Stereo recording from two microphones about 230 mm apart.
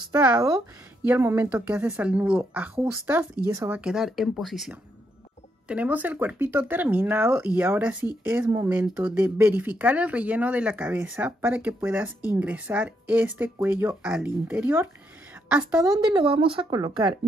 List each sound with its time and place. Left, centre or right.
0.1 s speech: centre
15.8 s speech: centre